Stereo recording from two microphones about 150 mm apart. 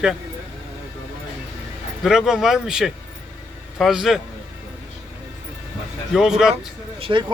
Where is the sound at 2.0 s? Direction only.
5° right (ahead or behind).